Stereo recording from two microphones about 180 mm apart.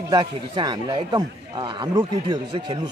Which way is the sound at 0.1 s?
25° right (ahead or behind).